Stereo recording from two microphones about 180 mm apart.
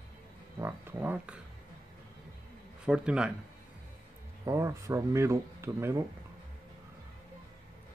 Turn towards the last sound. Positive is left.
turn(degrees=-15)  # may be behind; listen again after turning